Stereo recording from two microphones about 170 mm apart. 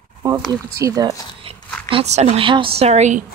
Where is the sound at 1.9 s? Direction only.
40° right (ahead or behind).